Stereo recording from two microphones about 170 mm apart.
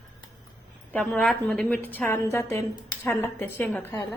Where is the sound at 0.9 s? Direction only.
5° left (ahead or behind).